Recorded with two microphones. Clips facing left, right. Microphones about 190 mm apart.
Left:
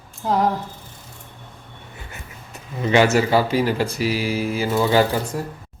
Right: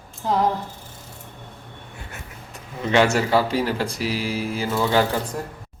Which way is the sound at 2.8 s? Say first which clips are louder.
Left 2 dB; 5° left (ahead or behind).